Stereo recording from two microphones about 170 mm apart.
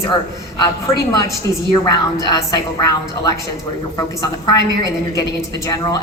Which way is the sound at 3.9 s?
20° left (ahead or behind).